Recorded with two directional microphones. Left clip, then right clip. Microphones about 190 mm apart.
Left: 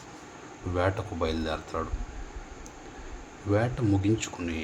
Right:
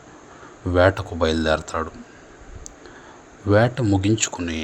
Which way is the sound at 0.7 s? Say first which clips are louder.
Right 11 dB; 40° right (ahead or behind).